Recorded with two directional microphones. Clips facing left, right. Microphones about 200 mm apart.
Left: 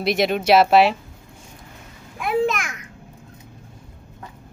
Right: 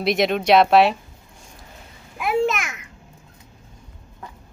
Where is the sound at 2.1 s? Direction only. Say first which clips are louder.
Even; centre (ahead or behind).